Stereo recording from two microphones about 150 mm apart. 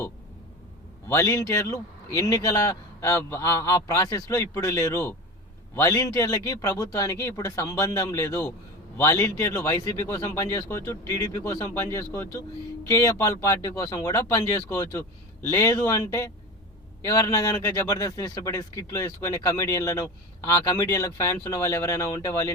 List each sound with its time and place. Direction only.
1.0 s a man's voice: 20° left (ahead or behind)